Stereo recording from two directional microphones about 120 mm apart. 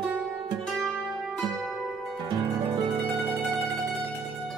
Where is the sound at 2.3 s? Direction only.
35° right (ahead or behind).